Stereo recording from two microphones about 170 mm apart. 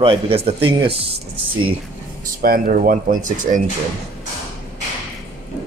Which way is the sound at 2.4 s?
55° right (ahead or behind).